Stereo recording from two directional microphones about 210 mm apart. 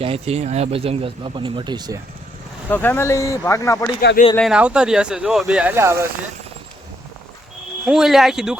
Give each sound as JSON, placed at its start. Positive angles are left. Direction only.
{"t": 0.0, "sound": "speech", "side_deg": -30}
{"t": 2.6, "sound": "speech", "side_deg": 10}
{"t": 4.4, "sound": "speech", "side_deg": -5}
{"t": 7.9, "sound": "speech", "side_deg": 0}